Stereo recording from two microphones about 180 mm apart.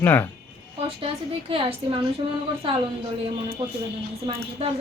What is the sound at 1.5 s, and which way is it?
Speech, 30° right (ahead or behind).